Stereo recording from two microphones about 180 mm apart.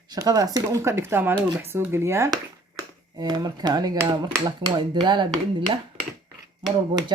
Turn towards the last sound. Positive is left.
turn(degrees=-25)  # may be behind; listen again after turning